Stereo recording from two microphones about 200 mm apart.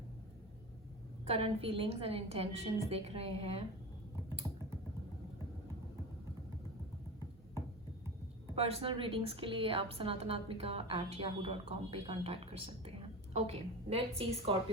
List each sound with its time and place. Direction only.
1.3 s a woman's voice: 30° right (ahead or behind)
8.5 s a woman's voice: 30° right (ahead or behind)